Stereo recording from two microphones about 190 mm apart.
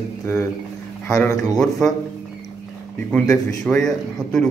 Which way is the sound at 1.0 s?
Centre (ahead or behind).